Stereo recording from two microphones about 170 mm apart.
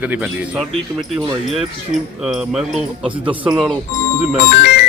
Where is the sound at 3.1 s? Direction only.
30° right (ahead or behind).